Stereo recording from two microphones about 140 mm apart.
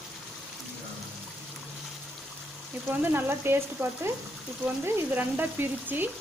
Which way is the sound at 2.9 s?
15° right (ahead or behind).